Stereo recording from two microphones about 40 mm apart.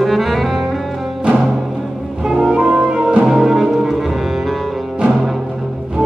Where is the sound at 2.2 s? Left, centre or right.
Centre.